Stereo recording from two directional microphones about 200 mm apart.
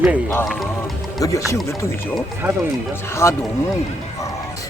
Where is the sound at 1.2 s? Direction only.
15° left (ahead or behind).